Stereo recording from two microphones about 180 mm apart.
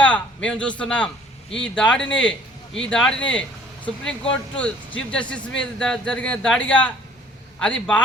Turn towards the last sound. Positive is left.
turn(degrees=5)  # may be behind; listen again after turning